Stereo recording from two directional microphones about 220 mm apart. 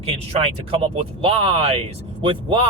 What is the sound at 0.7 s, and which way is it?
Speech, 25° right (ahead or behind).